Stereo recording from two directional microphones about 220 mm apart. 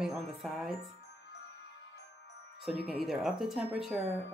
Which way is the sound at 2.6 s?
Centre (ahead or behind).